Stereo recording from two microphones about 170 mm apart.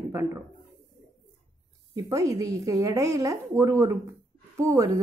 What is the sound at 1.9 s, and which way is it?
A woman's voice, 20° right (ahead or behind).